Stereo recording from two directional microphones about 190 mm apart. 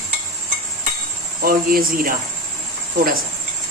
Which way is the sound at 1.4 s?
50° right (ahead or behind).